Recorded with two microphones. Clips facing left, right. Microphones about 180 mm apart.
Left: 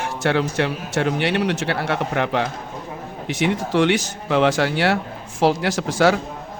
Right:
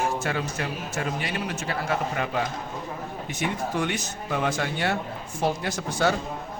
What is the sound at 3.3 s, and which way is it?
Speech, 90° left.